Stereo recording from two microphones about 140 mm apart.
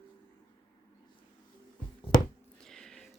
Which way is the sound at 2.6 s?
5° left (ahead or behind).